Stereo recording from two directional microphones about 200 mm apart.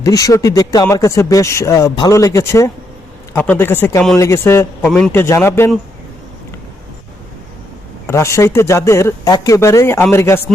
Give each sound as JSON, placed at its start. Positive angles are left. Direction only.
{"t": 0.0, "sound": "speech", "side_deg": 15}
{"t": 8.0, "sound": "speech", "side_deg": 15}